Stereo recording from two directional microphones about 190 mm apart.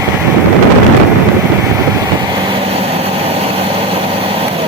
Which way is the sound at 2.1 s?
20° right (ahead or behind).